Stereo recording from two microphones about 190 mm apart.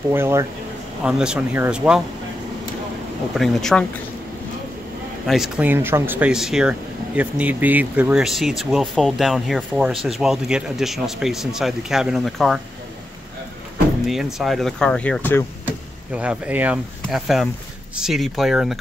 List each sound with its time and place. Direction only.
0.1 s speech: 15° right (ahead or behind)
3.3 s speech: centre (ahead or behind)
5.2 s speech: centre (ahead or behind)
14.0 s speech: centre (ahead or behind)
16.2 s speech: 5° right (ahead or behind)